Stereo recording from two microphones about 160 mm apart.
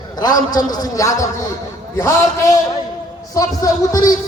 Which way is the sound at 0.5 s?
25° left (ahead or behind).